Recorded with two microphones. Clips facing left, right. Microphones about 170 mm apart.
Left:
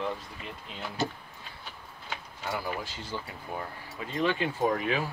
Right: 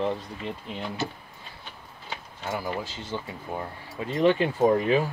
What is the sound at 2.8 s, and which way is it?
Speech, 20° right (ahead or behind).